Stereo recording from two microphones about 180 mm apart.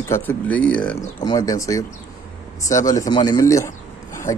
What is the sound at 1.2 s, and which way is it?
Speech, 20° left (ahead or behind).